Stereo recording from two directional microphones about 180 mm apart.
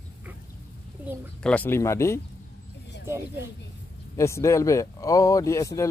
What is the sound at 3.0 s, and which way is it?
Speech, 15° right (ahead or behind).